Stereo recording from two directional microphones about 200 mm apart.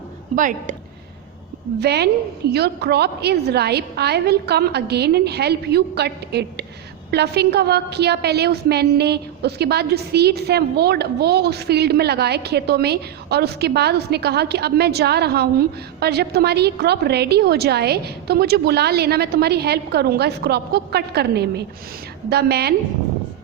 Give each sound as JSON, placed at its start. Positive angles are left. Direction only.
{"t": 0.3, "sound": "a woman's voice", "side_deg": -40}
{"t": 1.8, "sound": "a woman's voice", "side_deg": -55}